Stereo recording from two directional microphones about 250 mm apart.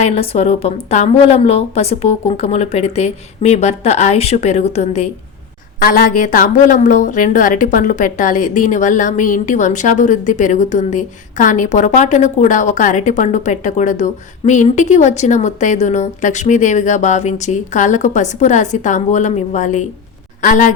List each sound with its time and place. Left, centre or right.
0.0 s a woman's voice: left